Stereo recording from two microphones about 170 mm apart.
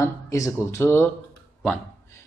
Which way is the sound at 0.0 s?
15° left (ahead or behind).